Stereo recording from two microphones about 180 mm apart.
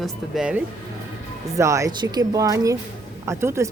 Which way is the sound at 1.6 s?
15° right (ahead or behind).